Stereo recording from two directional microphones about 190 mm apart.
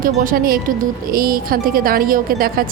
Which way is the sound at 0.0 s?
45° right (ahead or behind).